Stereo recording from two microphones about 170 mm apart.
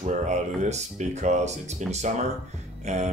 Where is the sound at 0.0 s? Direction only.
45° right (ahead or behind).